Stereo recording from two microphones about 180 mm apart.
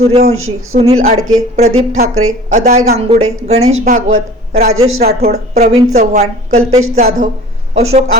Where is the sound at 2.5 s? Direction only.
45° right (ahead or behind).